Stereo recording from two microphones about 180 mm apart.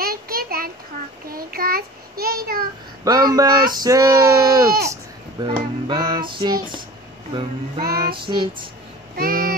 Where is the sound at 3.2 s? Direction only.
20° right (ahead or behind).